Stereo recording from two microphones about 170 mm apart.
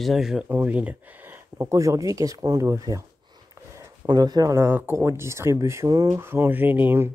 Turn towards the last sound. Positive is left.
turn(degrees=-10)  # may be behind; listen again after turning